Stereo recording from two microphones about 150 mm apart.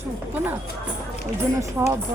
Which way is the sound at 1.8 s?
20° right (ahead or behind).